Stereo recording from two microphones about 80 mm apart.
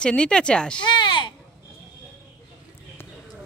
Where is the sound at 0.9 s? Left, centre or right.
Left.